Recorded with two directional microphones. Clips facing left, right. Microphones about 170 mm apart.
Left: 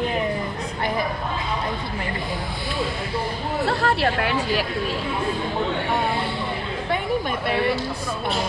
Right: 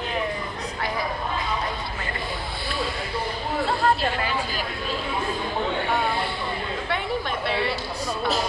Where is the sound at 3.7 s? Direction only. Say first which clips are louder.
Left 1 dB; 75° left (ahead or behind).